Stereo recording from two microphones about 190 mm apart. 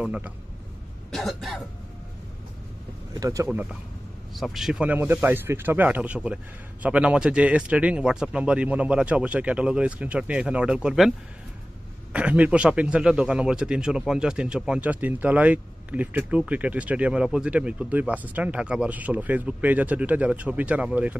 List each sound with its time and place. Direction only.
0.0 s a man's voice: 5° right (ahead or behind)
3.2 s speech: 15° right (ahead or behind)
4.4 s speech: centre (ahead or behind)